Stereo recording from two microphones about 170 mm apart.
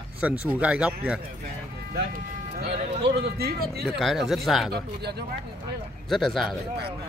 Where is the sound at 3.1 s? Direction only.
70° right (ahead or behind).